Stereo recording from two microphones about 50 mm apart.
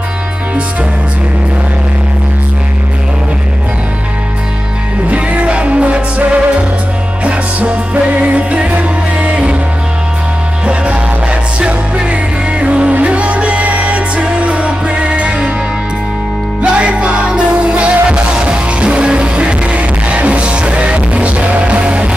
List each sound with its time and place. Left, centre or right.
5.1 s music: right
10.6 s music: right
16.6 s music: right